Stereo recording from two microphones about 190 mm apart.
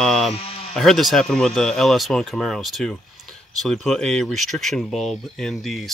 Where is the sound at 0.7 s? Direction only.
Centre (ahead or behind).